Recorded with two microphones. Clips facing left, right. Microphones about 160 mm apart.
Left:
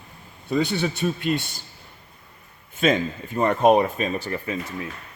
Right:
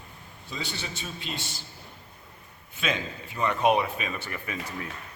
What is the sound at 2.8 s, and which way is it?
Speech, 50° left (ahead or behind).